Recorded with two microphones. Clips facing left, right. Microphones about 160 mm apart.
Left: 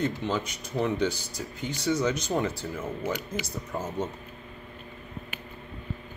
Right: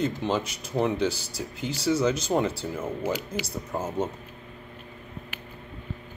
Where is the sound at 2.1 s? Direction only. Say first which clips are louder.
Right 3 dB; 30° right (ahead or behind).